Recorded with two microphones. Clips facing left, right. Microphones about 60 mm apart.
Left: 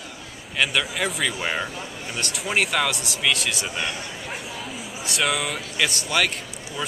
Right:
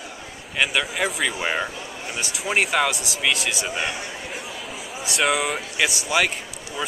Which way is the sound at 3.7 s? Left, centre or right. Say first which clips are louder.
Right 2 dB; centre.